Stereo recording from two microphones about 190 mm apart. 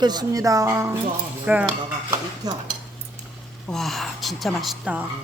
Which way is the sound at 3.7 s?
Centre (ahead or behind).